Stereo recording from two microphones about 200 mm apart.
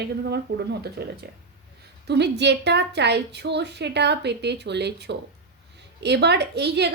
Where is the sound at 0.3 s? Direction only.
55° right (ahead or behind).